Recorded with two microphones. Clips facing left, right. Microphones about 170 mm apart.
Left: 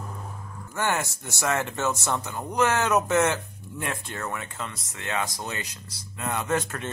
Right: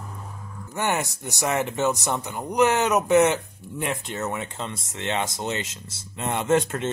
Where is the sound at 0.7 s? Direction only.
15° right (ahead or behind).